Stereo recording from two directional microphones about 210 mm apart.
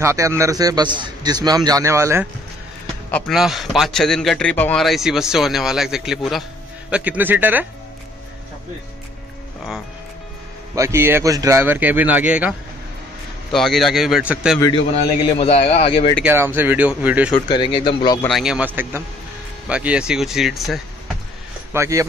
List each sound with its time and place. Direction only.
0.0 s a man's voice: 15° right (ahead or behind)
3.1 s a man's voice: 5° left (ahead or behind)
10.7 s a man's voice: 15° right (ahead or behind)
14.6 s a man's voice: 25° left (ahead or behind)
16.2 s a man's voice: 10° right (ahead or behind)
17.5 s a man's voice: 25° left (ahead or behind)
18.2 s a man's voice: centre (ahead or behind)
21.7 s a man's voice: 15° right (ahead or behind)